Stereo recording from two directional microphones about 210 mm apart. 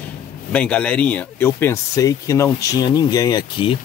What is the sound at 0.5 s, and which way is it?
Speech, 5° left (ahead or behind).